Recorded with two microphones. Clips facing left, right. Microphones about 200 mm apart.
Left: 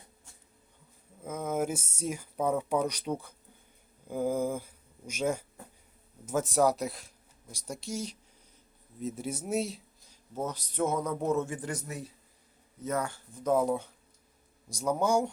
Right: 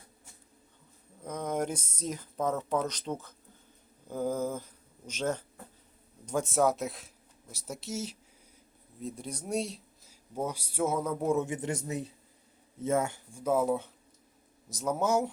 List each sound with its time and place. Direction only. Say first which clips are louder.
1.2 s speech: left 1 dB; 5° left (ahead or behind); by 13.2 s 25° right (ahead or behind)
13.3 s speech: left 1 dB; 5° right (ahead or behind)